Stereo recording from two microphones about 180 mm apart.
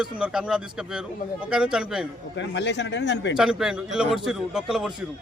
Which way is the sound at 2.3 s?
75° left (ahead or behind).